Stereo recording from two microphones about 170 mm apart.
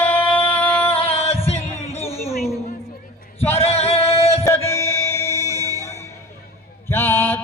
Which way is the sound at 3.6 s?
35° left (ahead or behind).